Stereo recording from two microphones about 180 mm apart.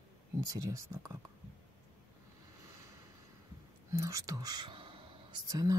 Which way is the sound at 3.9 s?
20° right (ahead or behind).